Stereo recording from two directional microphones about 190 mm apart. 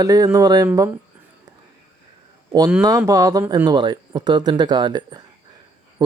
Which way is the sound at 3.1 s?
20° right (ahead or behind).